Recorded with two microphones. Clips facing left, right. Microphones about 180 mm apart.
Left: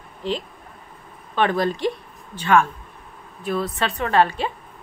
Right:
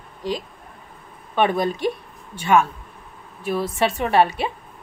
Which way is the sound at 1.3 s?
15° right (ahead or behind).